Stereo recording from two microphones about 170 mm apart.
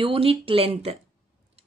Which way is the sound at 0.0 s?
35° right (ahead or behind).